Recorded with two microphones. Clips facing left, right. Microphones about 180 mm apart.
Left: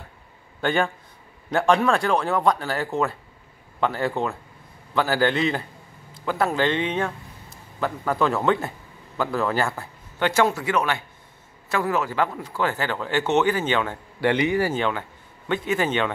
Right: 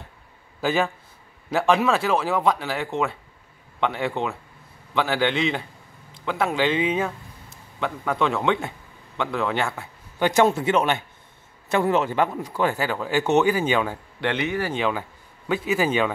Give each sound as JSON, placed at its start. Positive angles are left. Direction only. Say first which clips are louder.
{"t": 0.6, "sound": "a man's voice", "louder": "even", "side_deg": -5}
{"t": 10.1, "sound": "a man's voice", "louder": "right 2 dB", "side_deg": -15}
{"t": 14.2, "sound": "speech", "louder": "left 4 dB", "side_deg": 10}
{"t": 14.8, "sound": "speech", "louder": "even", "side_deg": -10}